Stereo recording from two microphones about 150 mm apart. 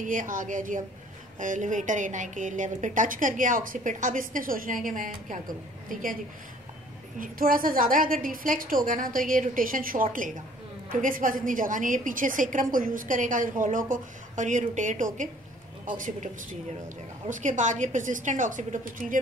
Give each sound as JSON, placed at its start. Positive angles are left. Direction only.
{"t": 0.0, "sound": "a woman's voice", "side_deg": -60}
{"t": 7.2, "sound": "a woman's voice", "side_deg": -70}
{"t": 17.3, "sound": "a woman's voice", "side_deg": -55}